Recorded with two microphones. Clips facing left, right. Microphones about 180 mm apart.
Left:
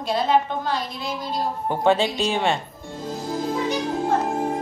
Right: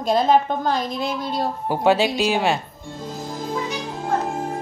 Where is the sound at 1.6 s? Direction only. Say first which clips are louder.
Right 1 dB; 5° right (ahead or behind).